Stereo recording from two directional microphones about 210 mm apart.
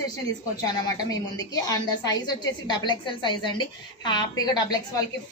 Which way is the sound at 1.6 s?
15° left (ahead or behind).